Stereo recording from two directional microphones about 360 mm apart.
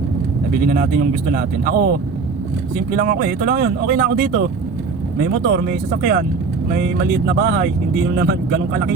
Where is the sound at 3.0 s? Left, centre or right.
Right.